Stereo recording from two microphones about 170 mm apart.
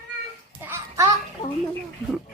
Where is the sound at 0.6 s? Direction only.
15° right (ahead or behind).